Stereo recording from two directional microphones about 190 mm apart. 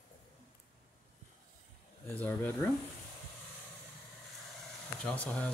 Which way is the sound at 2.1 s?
10° left (ahead or behind).